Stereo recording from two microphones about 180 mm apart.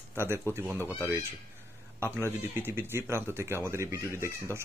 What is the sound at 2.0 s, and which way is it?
Speech, 10° left (ahead or behind).